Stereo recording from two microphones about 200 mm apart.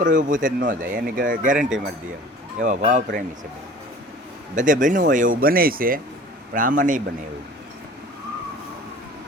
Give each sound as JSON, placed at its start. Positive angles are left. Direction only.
{"t": 0.0, "sound": "speech", "side_deg": -40}
{"t": 2.6, "sound": "speech", "side_deg": -40}
{"t": 4.5, "sound": "speech", "side_deg": -40}